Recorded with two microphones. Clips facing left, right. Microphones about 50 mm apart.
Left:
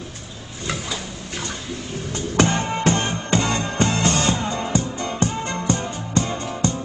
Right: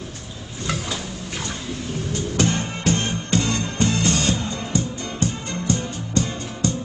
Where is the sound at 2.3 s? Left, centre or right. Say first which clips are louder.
Left 5 dB; left.